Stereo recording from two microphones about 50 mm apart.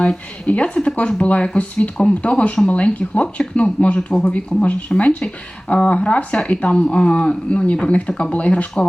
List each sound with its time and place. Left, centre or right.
0.4 s speech: left